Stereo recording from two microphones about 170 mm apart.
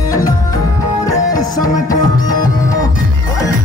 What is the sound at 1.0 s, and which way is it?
Music, 20° left (ahead or behind).